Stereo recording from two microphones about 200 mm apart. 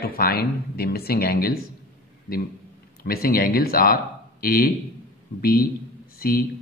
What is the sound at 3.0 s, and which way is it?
Speech, 50° left (ahead or behind).